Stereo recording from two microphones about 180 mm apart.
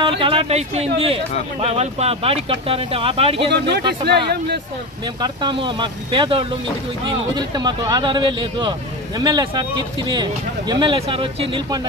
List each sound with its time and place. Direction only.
0.2 s speech: 30° right (ahead or behind)
3.5 s speech: 65° right (ahead or behind)
5.0 s speech: 25° right (ahead or behind)